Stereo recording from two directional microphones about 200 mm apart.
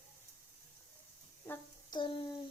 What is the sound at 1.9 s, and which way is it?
Child singing, 25° left (ahead or behind).